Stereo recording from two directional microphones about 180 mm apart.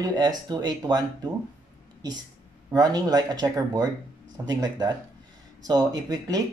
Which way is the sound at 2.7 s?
20° right (ahead or behind).